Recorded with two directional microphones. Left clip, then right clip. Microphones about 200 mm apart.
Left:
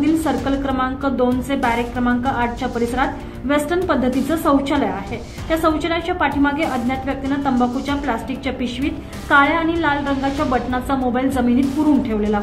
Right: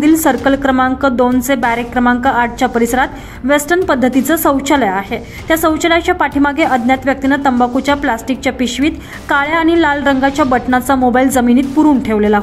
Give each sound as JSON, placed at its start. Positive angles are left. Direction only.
{"t": 0.0, "sound": "a woman's voice", "side_deg": -45}